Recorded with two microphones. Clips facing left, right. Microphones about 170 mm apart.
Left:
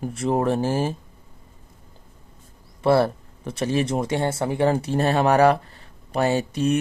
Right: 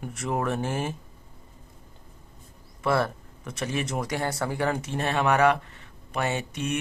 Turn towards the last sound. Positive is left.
turn(degrees=35)  # may be behind; listen again after turning